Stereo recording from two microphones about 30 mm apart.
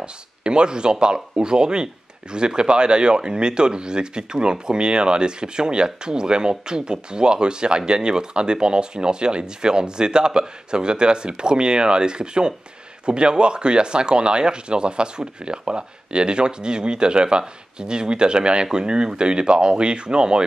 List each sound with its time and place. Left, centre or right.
0.0 s speech: right